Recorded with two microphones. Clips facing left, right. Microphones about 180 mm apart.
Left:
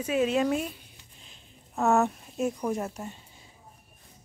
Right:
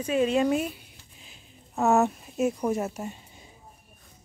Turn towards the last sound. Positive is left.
turn(degrees=-5)  # may be behind; listen again after turning